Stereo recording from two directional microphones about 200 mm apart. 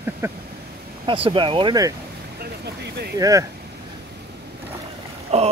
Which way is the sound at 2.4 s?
55° right (ahead or behind).